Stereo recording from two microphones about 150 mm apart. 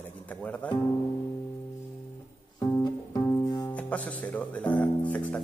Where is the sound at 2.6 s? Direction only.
25° left (ahead or behind).